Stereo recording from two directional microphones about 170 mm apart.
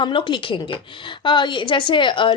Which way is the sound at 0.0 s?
30° left (ahead or behind).